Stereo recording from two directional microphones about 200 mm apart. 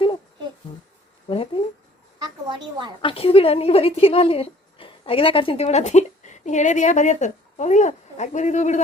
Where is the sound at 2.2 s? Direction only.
25° right (ahead or behind).